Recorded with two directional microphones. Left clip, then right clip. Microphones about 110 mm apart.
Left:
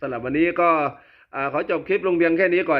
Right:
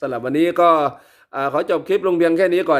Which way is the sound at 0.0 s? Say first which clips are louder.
Right 3 dB; 20° right (ahead or behind).